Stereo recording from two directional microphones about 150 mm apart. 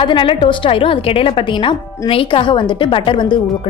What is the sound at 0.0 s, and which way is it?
A woman's voice, 35° left (ahead or behind).